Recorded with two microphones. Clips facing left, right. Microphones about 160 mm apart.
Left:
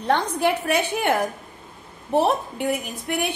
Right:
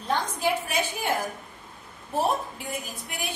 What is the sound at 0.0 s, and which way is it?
A woman's voice, 65° left (ahead or behind).